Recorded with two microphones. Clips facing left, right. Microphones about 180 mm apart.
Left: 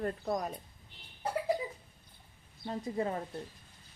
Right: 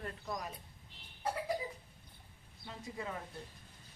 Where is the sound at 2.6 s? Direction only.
45° left (ahead or behind).